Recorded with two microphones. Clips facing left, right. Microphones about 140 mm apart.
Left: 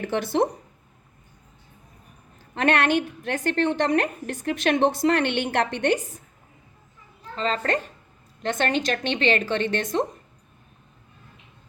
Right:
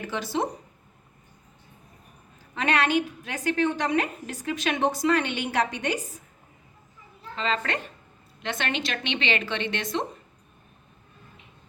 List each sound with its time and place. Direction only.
0.0 s a woman's voice: 55° left (ahead or behind)
2.6 s a woman's voice: 55° left (ahead or behind)
7.3 s a woman's voice: 40° left (ahead or behind)